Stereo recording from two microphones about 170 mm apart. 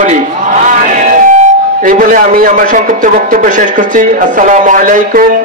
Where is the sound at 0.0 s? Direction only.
45° right (ahead or behind).